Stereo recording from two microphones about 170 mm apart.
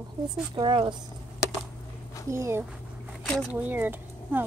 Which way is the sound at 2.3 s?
15° right (ahead or behind).